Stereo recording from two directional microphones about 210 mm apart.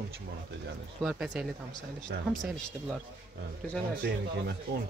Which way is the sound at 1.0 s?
5° right (ahead or behind).